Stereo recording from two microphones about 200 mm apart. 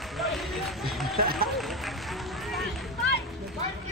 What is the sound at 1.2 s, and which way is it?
Speech, 50° right (ahead or behind).